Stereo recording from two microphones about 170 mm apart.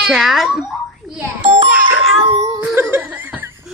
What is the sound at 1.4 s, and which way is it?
Music, 30° right (ahead or behind).